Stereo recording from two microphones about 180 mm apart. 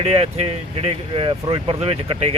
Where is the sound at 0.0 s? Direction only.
35° right (ahead or behind).